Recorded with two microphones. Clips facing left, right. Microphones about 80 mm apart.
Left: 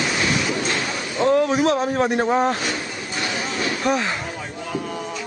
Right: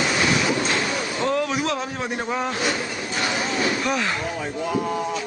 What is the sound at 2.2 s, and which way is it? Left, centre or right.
Speech, left.